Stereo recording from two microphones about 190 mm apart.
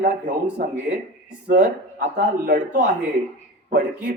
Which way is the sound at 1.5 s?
50° right (ahead or behind).